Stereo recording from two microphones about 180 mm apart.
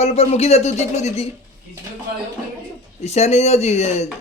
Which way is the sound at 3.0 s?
35° left (ahead or behind).